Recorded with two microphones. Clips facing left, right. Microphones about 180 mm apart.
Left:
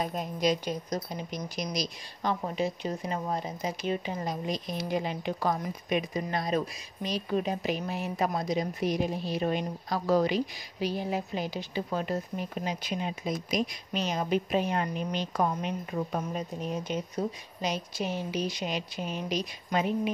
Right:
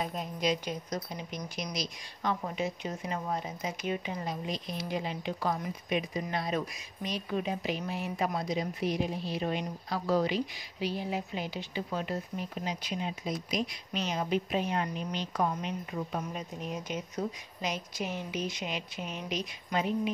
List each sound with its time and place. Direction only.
0.0 s a woman's voice: 45° left (ahead or behind)